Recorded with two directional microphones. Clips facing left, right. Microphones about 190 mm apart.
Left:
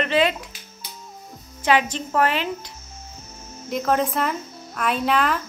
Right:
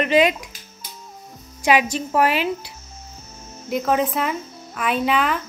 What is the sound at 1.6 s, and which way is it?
Speech, 10° right (ahead or behind).